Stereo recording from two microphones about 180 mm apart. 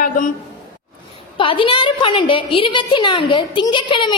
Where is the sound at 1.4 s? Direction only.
30° left (ahead or behind).